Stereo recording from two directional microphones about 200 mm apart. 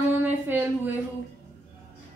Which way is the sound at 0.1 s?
10° right (ahead or behind).